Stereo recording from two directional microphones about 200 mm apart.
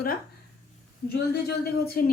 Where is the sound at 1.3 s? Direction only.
55° left (ahead or behind).